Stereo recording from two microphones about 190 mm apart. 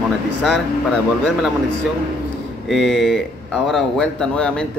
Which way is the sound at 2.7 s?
Centre (ahead or behind).